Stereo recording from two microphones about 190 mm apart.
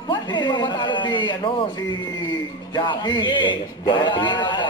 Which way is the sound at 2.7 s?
25° left (ahead or behind).